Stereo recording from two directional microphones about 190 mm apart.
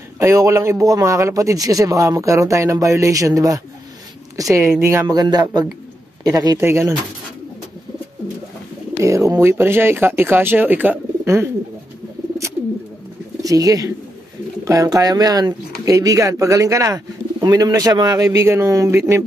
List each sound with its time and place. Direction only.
0.2 s a man's voice: 15° right (ahead or behind)
9.0 s a man's voice: 15° right (ahead or behind)
13.4 s a man's voice: 20° right (ahead or behind)